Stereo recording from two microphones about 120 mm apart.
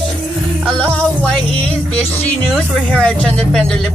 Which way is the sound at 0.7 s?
10° left (ahead or behind).